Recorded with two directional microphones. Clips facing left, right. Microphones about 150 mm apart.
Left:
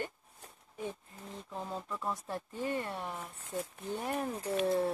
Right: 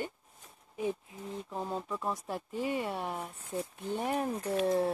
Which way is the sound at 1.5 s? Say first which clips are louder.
Right 3 dB; 10° right (ahead or behind).